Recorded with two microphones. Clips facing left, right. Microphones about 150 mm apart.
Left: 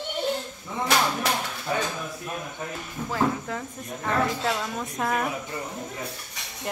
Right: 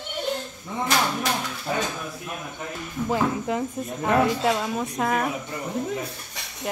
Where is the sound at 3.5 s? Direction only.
20° right (ahead or behind); by 5.3 s centre (ahead or behind).